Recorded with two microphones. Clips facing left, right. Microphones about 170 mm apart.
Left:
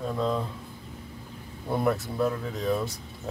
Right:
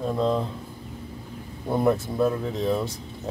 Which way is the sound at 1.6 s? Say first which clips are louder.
Right 4 dB; 15° right (ahead or behind).